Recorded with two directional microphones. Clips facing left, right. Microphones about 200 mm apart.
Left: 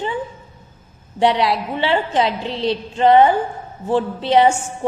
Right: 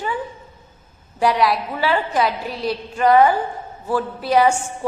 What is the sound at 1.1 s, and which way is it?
A woman's voice, 25° left (ahead or behind).